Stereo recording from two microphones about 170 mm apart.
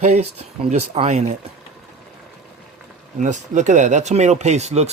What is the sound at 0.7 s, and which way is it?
Speech, 45° right (ahead or behind).